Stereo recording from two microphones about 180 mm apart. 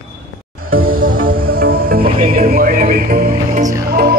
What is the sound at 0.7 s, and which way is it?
Music, 55° right (ahead or behind).